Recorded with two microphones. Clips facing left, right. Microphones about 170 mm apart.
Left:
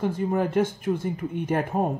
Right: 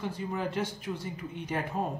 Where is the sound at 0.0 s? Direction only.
50° left (ahead or behind).